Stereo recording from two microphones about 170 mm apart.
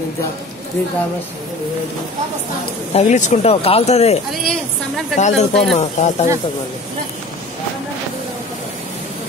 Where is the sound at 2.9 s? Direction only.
40° left (ahead or behind).